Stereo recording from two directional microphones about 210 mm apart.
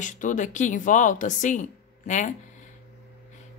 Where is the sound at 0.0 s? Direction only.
35° left (ahead or behind).